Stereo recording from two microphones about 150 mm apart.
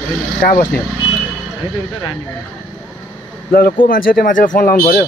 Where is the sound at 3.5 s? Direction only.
75° left (ahead or behind); by 5.0 s 55° left (ahead or behind).